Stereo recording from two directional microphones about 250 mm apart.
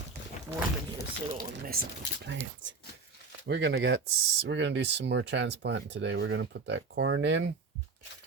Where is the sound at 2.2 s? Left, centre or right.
Right.